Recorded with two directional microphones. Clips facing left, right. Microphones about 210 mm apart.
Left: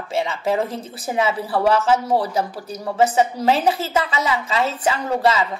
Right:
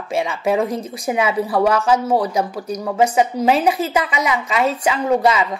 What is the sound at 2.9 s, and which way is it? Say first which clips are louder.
A woman's voice: right 1 dB; 10° right (ahead or behind).